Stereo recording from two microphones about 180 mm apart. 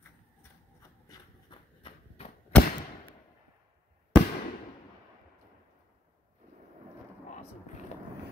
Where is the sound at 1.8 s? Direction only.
35° left (ahead or behind).